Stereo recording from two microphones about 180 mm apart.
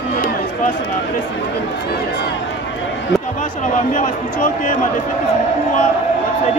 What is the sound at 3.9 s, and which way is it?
Speech, 50° left (ahead or behind).